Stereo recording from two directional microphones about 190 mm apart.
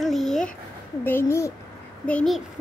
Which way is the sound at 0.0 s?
Centre (ahead or behind).